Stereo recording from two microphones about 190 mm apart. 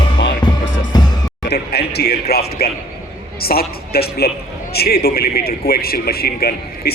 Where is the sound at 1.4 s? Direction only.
60° left (ahead or behind).